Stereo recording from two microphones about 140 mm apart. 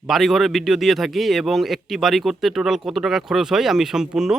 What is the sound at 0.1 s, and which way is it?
A man's voice, centre (ahead or behind).